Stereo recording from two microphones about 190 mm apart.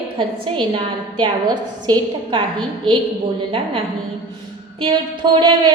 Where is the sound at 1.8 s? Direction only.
20° right (ahead or behind).